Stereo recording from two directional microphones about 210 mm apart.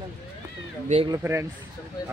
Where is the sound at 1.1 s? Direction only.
15° right (ahead or behind).